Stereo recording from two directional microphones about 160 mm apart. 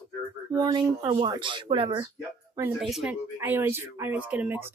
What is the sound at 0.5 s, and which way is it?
Speech, 20° right (ahead or behind).